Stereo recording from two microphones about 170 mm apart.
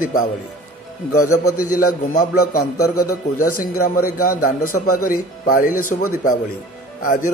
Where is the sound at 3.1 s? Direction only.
55° left (ahead or behind).